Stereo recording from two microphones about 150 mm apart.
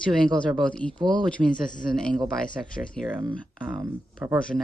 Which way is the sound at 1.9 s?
5° left (ahead or behind).